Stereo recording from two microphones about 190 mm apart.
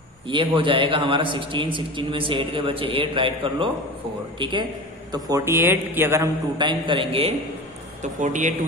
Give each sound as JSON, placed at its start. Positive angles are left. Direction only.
{"t": 0.3, "sound": "a man's voice", "side_deg": -25}
{"t": 8.0, "sound": "speech", "side_deg": -40}